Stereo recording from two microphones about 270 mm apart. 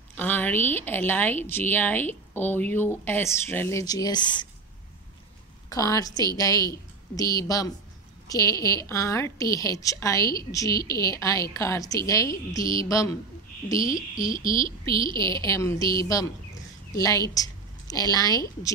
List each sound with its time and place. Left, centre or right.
0.1 s a woman's voice: centre
5.7 s a woman's voice: centre
14.3 s speech: left
14.6 s a woman's voice: centre
15.1 s a woman's voice: centre